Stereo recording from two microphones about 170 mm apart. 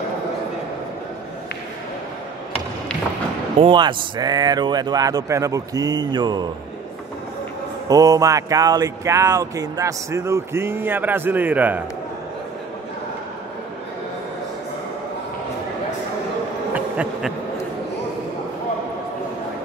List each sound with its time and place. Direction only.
3.5 s speech: 30° right (ahead or behind)
7.9 s speech: 20° right (ahead or behind)
16.7 s bee: 5° right (ahead or behind)